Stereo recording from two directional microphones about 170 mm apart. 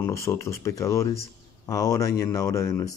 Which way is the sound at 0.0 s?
15° left (ahead or behind).